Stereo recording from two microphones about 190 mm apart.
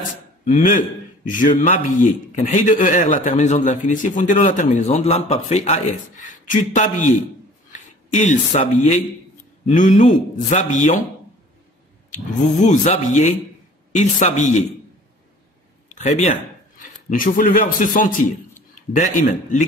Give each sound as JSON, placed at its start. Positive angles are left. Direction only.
{"t": 0.7, "sound": "a man's voice", "side_deg": 45}
{"t": 12.1, "sound": "a man's voice", "side_deg": 40}
{"t": 15.9, "sound": "a man's voice", "side_deg": 35}